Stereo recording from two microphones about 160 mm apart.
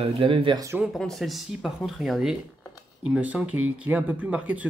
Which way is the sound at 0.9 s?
Centre (ahead or behind).